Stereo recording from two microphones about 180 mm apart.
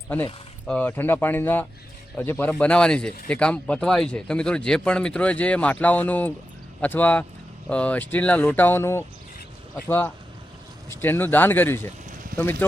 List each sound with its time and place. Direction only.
0.7 s speech: 10° left (ahead or behind)